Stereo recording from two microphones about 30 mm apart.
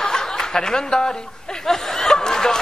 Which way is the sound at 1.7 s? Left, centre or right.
Centre.